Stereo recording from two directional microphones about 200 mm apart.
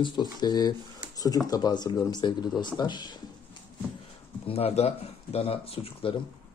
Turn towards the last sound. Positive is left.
turn(degrees=30)  # may be behind; listen again after turning